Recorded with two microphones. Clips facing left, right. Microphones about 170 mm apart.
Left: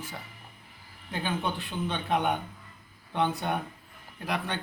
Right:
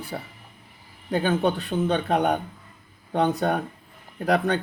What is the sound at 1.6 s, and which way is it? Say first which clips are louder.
Speech: right 9 dB; 40° right (ahead or behind).